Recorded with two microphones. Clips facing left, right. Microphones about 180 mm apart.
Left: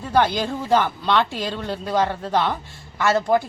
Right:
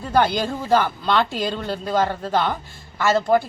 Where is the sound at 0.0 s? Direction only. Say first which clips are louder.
Even; centre (ahead or behind).